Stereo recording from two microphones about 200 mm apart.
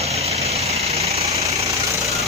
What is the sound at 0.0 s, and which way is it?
Vehicle, 30° right (ahead or behind).